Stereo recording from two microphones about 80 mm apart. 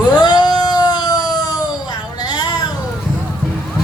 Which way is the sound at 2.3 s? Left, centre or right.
Left.